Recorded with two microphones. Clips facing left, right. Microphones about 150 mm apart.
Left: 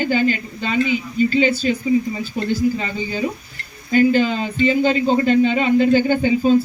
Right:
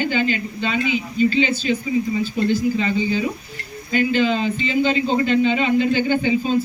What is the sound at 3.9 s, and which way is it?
A man's voice, 45° left (ahead or behind).